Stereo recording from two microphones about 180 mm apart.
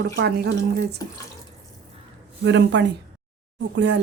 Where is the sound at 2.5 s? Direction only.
80° right.